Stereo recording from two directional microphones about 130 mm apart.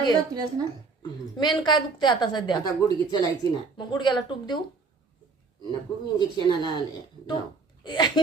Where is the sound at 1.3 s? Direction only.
35° left (ahead or behind).